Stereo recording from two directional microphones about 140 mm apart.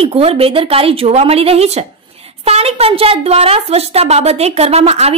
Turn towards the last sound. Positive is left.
turn(degrees=-50)  # may be behind; listen again after turning